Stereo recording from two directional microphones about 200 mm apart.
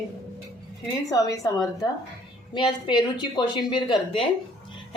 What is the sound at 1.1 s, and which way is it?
A woman's voice, 20° left (ahead or behind).